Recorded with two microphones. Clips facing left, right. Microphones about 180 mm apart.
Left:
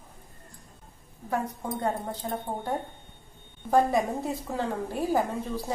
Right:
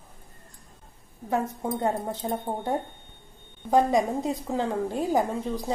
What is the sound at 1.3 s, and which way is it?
A woman's voice, 25° right (ahead or behind).